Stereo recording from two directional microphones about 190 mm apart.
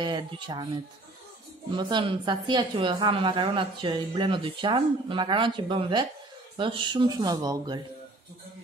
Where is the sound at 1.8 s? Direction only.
25° right (ahead or behind).